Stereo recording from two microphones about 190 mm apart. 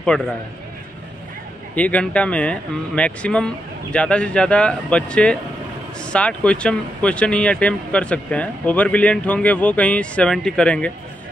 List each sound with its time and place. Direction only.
0.1 s speech: 5° left (ahead or behind)
1.8 s speech: 5° left (ahead or behind)